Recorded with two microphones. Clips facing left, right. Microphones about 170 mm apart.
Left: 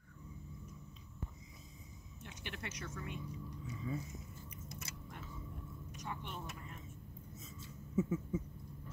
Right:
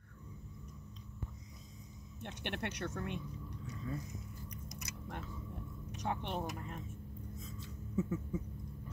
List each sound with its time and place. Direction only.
2.2 s speech: 65° right (ahead or behind)
3.6 s speech: 5° left (ahead or behind)
5.9 s speech: 65° right (ahead or behind)
7.9 s a sound: centre (ahead or behind)